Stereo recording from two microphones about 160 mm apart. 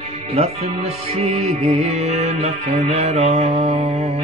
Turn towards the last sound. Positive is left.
turn(degrees=-40)  # may be behind; listen again after turning